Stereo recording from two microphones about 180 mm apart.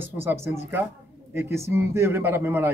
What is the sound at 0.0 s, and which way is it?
A man's voice, 10° right (ahead or behind).